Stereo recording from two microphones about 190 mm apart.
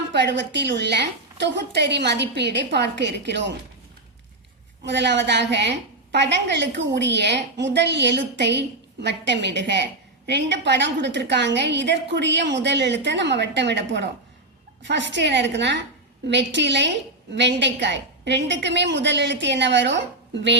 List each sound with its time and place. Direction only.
0.1 s a woman's voice: 65° right (ahead or behind)
4.8 s a woman's voice: 65° right (ahead or behind)